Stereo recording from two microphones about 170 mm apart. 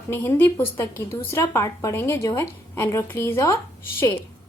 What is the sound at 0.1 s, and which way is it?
A woman's voice, 15° left (ahead or behind).